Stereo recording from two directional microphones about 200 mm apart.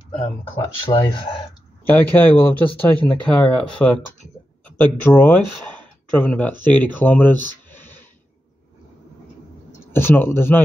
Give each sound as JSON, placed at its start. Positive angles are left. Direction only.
{"t": 0.1, "sound": "speech", "side_deg": 25}
{"t": 1.9, "sound": "speech", "side_deg": 10}
{"t": 7.7, "sound": "a sound", "side_deg": 10}
{"t": 9.9, "sound": "speech", "side_deg": 10}